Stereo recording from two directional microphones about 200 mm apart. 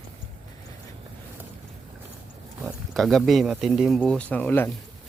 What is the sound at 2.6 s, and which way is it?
Speech, centre (ahead or behind).